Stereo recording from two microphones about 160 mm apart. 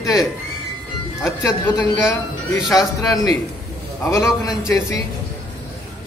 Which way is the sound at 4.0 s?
20° left (ahead or behind).